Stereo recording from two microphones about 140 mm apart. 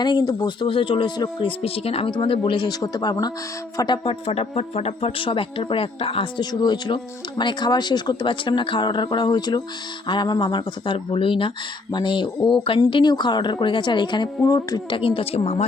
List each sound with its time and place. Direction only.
0.0 s speech: 30° left (ahead or behind); by 15.6 s 50° left (ahead or behind)